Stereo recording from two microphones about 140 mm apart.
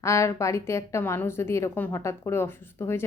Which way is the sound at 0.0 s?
20° left (ahead or behind).